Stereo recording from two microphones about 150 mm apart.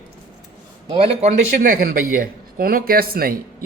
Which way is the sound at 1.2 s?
60° right (ahead or behind).